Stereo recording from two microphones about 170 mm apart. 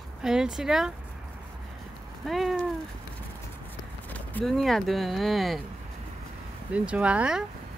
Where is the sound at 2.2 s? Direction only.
Centre (ahead or behind).